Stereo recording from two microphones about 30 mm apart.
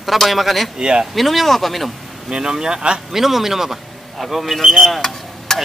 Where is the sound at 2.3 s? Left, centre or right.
Right.